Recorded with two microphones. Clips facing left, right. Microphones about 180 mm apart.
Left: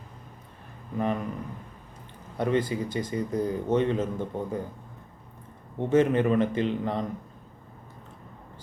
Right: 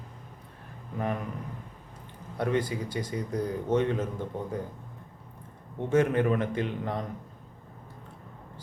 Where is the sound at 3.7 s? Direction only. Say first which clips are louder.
Left 1 dB; 10° right (ahead or behind).